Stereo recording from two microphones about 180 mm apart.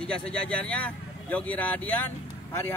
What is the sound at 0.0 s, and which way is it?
Speech, 5° left (ahead or behind).